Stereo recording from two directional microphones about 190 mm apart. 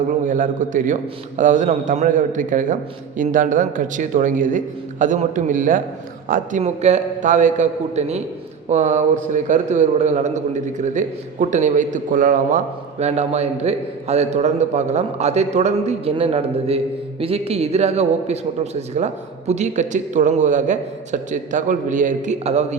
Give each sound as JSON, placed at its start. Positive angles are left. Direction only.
{"t": 0.3, "sound": "a man's voice", "side_deg": -45}